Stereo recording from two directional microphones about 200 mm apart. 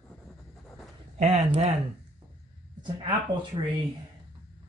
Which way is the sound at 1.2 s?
30° right (ahead or behind).